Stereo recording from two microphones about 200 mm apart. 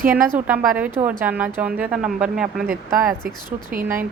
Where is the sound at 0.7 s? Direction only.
10° right (ahead or behind).